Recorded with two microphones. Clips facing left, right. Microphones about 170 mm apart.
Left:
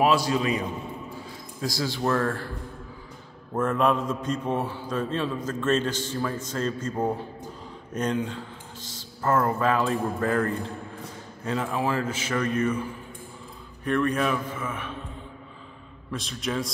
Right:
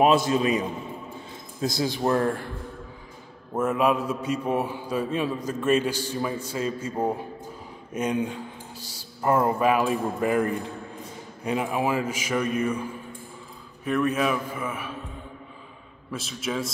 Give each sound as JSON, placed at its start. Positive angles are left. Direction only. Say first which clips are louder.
{"t": 0.0, "sound": "speech", "louder": "right 2 dB", "side_deg": -20}
{"t": 3.5, "sound": "a man's voice", "louder": "right 1 dB", "side_deg": -10}
{"t": 13.8, "sound": "a man's voice", "louder": "right 1 dB", "side_deg": -5}
{"t": 16.1, "sound": "a man's voice", "louder": "even", "side_deg": -5}